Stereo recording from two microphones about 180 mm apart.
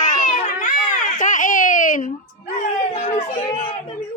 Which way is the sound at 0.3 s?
45° left (ahead or behind).